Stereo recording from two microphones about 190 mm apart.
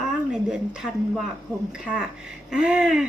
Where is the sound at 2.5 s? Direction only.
5° right (ahead or behind).